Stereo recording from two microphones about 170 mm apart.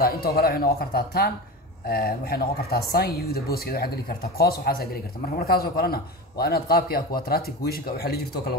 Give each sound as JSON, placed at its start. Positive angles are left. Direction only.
{"t": 0.0, "sound": "speech", "side_deg": 65}